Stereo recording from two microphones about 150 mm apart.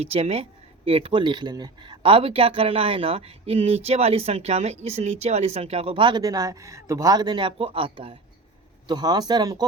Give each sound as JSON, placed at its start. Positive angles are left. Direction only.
{"t": 0.0, "sound": "speech", "side_deg": -40}